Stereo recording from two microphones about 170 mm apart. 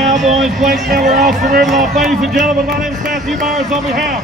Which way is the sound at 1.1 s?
50° right (ahead or behind).